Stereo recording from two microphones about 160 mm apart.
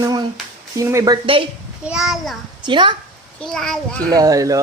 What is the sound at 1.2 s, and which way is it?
Speech, 35° right (ahead or behind).